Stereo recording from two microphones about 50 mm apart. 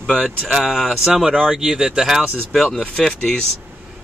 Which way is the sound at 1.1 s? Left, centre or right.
Centre.